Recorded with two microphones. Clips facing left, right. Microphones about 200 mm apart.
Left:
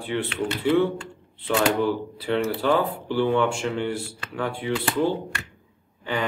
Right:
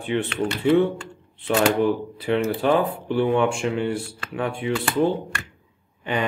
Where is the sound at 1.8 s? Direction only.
20° right (ahead or behind).